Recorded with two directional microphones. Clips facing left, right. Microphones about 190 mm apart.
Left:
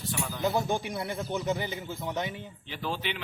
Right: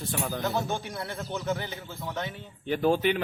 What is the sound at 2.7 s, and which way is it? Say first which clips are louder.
Speech: right 11 dB; 50° right (ahead or behind).